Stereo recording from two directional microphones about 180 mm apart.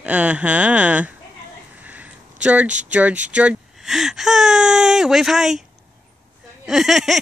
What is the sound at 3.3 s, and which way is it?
Speech, 5° right (ahead or behind).